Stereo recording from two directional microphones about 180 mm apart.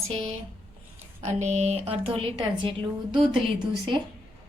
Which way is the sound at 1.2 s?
40° right (ahead or behind).